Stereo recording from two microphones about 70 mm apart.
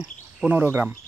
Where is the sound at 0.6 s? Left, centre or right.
Right.